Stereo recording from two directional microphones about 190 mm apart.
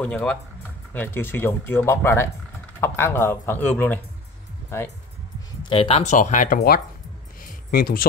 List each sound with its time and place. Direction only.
0.0 s speech: 5° left (ahead or behind)
5.6 s speech: 30° left (ahead or behind); by 6.8 s 50° left (ahead or behind)
7.4 s a sound: 50° left (ahead or behind)